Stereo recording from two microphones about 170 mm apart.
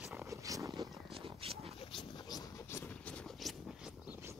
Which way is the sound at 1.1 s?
35° right (ahead or behind).